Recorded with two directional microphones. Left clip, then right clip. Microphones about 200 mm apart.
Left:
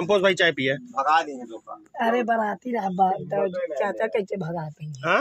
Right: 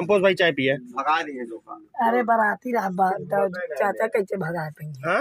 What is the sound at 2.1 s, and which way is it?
Speech, 20° left (ahead or behind).